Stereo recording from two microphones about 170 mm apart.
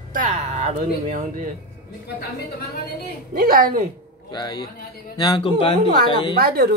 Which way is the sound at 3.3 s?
60° right (ahead or behind).